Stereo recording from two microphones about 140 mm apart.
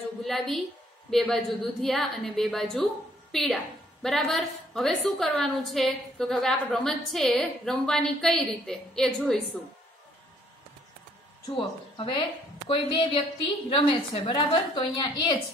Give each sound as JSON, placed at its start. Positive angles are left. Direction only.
{"t": 0.2, "sound": "a woman's voice", "side_deg": 0}
{"t": 11.4, "sound": "a woman's voice", "side_deg": 35}